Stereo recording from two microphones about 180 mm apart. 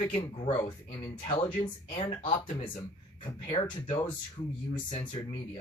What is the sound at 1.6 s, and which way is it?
Speech, 30° left (ahead or behind).